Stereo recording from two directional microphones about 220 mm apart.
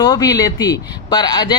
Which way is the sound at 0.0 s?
15° left (ahead or behind).